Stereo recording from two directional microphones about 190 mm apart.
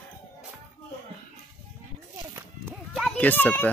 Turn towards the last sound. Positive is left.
turn(degrees=10)  # may be behind; listen again after turning